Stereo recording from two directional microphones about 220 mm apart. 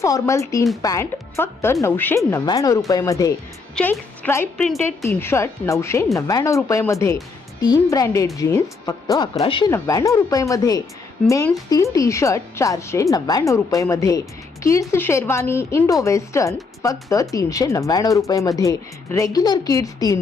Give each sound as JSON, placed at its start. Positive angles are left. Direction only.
{"t": 0.0, "sound": "speech", "side_deg": 15}